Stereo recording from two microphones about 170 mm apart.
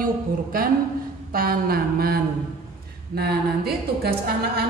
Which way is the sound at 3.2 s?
70° right (ahead or behind).